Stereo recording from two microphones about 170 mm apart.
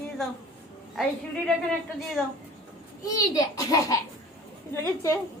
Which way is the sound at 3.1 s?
20° left (ahead or behind).